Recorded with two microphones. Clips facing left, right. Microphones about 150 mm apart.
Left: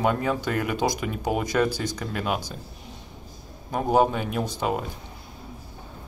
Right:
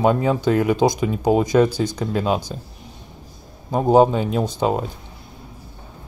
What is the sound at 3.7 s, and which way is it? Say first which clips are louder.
Speech: right 7 dB; 25° right (ahead or behind).